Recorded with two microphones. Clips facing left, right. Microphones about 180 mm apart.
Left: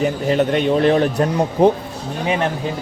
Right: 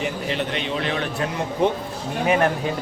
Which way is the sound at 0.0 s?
45° left (ahead or behind).